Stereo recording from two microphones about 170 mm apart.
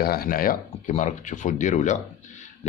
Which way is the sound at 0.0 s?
65° left (ahead or behind).